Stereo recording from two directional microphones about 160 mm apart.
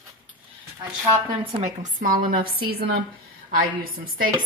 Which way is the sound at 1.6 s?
55° right (ahead or behind).